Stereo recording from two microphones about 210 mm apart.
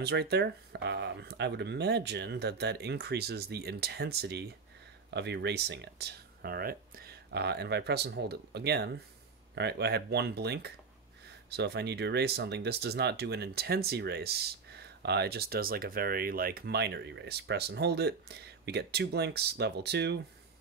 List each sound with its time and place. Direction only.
0.0 s speech: 50° right (ahead or behind)